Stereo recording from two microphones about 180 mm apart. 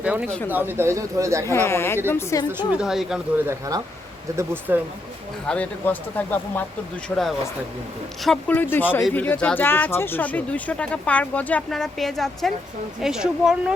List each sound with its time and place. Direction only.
0.0 s speech: 5° right (ahead or behind)
1.5 s speech: 15° left (ahead or behind)
2.7 s speech: centre (ahead or behind)
3.4 s speech: 20° right (ahead or behind)
5.5 s speech: 10° left (ahead or behind)